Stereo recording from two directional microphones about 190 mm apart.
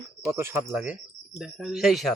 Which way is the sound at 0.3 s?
15° right (ahead or behind).